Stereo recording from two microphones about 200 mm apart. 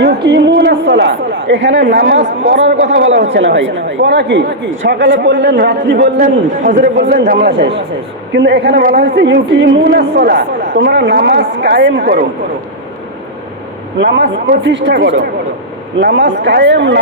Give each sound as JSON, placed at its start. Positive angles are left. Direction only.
{"t": 0.0, "sound": "a woman's voice", "side_deg": -55}
{"t": 6.5, "sound": "speech", "side_deg": -40}
{"t": 7.0, "sound": "a woman's voice", "side_deg": -55}
{"t": 14.0, "sound": "a woman's voice", "side_deg": -60}